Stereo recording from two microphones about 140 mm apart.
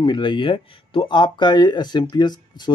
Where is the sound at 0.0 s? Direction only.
35° left (ahead or behind).